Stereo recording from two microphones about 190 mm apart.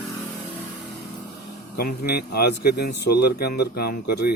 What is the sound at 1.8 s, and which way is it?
Speech, 55° left (ahead or behind).